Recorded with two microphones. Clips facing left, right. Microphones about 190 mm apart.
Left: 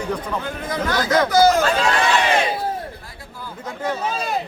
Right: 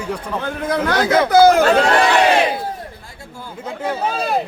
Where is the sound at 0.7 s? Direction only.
60° right (ahead or behind).